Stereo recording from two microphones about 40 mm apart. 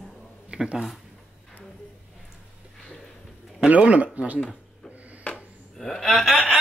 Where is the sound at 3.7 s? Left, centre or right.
Right.